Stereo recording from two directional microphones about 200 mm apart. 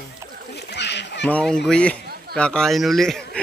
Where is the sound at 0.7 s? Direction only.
60° left (ahead or behind).